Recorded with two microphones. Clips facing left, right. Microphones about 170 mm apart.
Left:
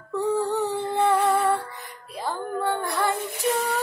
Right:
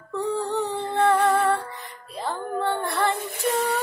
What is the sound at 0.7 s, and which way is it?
Music, 10° left (ahead or behind).